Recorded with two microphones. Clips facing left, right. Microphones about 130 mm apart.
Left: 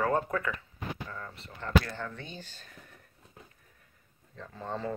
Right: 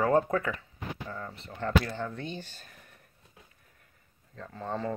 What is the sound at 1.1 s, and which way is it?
Speech, 30° right (ahead or behind).